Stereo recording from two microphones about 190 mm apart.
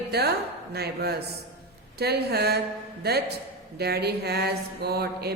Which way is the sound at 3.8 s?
60° right (ahead or behind).